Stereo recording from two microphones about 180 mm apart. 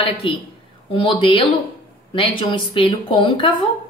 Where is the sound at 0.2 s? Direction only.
30° left (ahead or behind).